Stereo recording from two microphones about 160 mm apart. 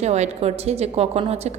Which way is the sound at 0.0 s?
45° right (ahead or behind).